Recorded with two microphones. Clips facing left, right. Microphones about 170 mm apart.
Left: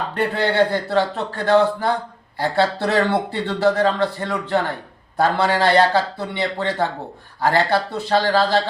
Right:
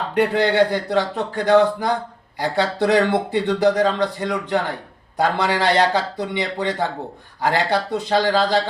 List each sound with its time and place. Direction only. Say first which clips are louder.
0.1 s speech: right 5 dB; 15° right (ahead or behind)